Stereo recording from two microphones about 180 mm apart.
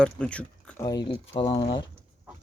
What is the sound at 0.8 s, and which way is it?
Speech, 25° left (ahead or behind).